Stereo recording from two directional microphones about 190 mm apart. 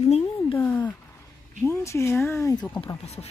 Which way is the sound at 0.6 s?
10° left (ahead or behind).